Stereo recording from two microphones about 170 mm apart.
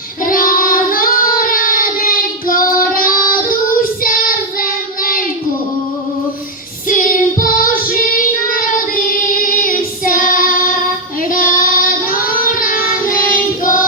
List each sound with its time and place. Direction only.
0.3 s child singing: 55° left (ahead or behind)
6.8 s child singing: 55° left (ahead or behind)